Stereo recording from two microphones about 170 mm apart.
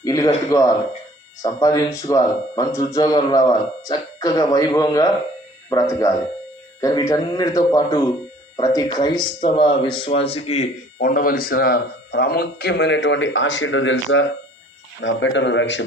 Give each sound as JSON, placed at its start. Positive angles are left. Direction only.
{"t": 0.0, "sound": "speech", "side_deg": 20}
{"t": 11.0, "sound": "a man's voice", "side_deg": 55}